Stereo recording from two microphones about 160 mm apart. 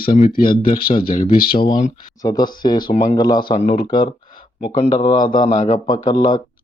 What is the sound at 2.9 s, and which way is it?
Speech, 40° left (ahead or behind).